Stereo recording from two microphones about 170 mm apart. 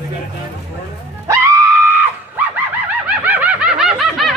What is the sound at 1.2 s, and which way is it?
Music, 15° right (ahead or behind).